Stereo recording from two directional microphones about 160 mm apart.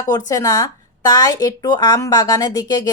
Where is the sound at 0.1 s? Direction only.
20° left (ahead or behind).